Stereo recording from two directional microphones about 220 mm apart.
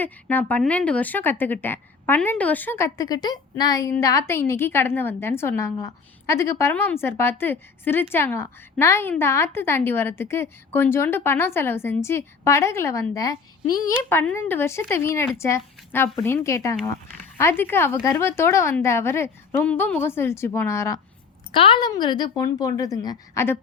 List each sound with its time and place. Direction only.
0.0 s a woman's voice: 10° left (ahead or behind)